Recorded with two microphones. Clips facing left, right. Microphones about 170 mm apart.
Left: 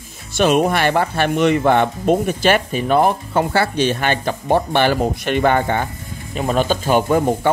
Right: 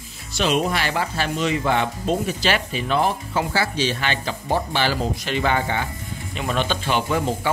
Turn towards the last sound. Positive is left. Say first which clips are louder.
# left 6 dB
turn(degrees=50)  # may be behind; listen again after turning